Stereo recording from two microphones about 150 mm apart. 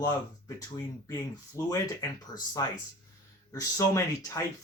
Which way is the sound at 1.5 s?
25° left (ahead or behind).